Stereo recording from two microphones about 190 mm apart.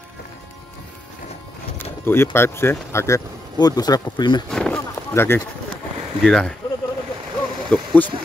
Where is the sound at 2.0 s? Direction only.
10° left (ahead or behind).